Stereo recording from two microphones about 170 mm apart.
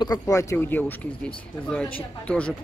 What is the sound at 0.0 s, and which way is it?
Speech, 20° left (ahead or behind).